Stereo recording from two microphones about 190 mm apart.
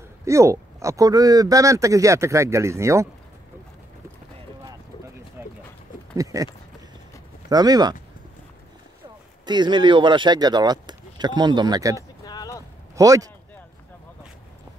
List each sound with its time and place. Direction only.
0.2 s speech: 15° right (ahead or behind)
5.4 s a sound: 10° right (ahead or behind)
6.1 s speech: 15° right (ahead or behind)
9.5 s speech: 25° right (ahead or behind)
12.3 s vehicle: 20° left (ahead or behind)
12.9 s a man's voice: 20° right (ahead or behind)